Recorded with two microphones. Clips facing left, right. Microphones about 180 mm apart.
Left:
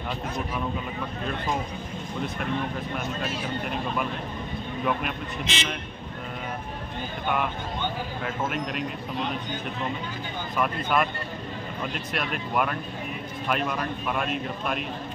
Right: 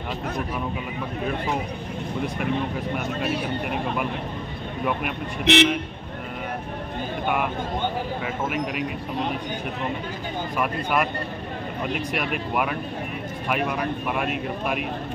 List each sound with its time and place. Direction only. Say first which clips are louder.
3.3 s speech: right 4 dB; 65° right (ahead or behind)
5.4 s speech: right 15 dB; 65° right (ahead or behind)
10.6 s speech: even; 10° right (ahead or behind)